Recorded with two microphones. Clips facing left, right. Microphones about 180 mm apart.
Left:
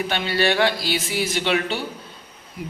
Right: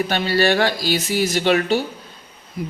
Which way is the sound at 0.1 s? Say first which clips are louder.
Right 2 dB; 40° right (ahead or behind).